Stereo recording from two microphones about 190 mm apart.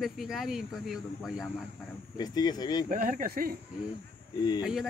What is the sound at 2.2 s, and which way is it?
Speech, 20° left (ahead or behind).